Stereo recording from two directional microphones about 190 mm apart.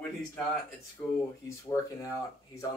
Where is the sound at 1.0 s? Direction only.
15° left (ahead or behind).